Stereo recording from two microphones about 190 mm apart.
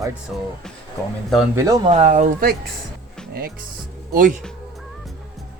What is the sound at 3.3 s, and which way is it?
Speech, 55° right (ahead or behind).